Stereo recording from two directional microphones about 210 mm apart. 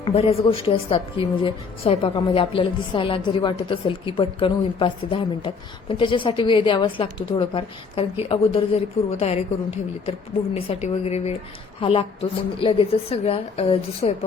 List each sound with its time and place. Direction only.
0.0 s a woman's voice: 25° left (ahead or behind)